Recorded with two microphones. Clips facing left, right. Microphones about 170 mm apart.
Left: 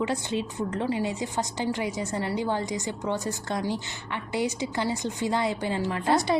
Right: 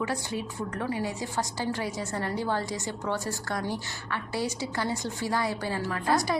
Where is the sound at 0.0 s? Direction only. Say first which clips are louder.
Left 3 dB; 25° left (ahead or behind).